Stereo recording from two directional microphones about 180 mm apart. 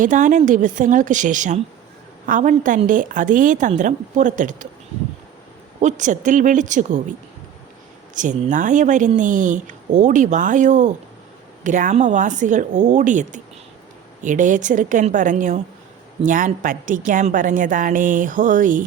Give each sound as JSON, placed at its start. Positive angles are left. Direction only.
{"t": 0.0, "sound": "a woman's voice", "side_deg": -45}
{"t": 5.8, "sound": "a woman's voice", "side_deg": -45}
{"t": 8.1, "sound": "a woman's voice", "side_deg": -45}